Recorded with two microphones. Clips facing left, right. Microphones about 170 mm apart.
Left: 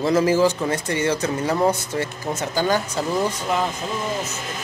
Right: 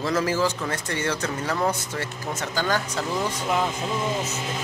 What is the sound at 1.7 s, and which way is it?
Speech, 15° left (ahead or behind).